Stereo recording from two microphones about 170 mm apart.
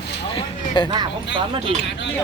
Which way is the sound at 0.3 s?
30° left (ahead or behind).